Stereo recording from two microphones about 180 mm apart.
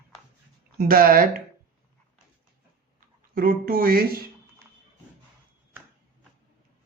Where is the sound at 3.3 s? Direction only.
55° right (ahead or behind).